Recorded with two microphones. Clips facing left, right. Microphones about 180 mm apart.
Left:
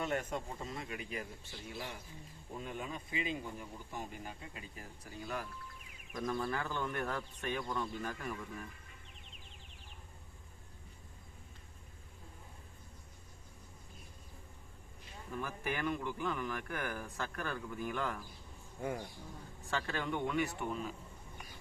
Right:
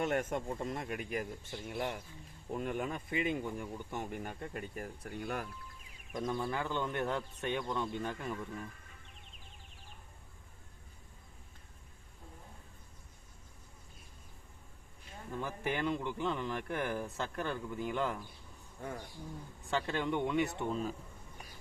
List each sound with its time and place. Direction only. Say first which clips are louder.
0.0 s speech: right 4 dB; 50° right (ahead or behind)
6.1 s speech: right 1 dB; 20° right (ahead or behind)
15.4 s speech: right 3 dB; 25° right (ahead or behind)
19.6 s speech: right 4 dB; 20° right (ahead or behind)